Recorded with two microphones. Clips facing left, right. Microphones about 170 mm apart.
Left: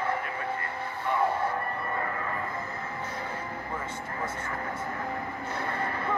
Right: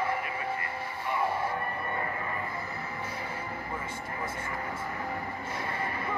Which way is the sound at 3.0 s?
10° right (ahead or behind).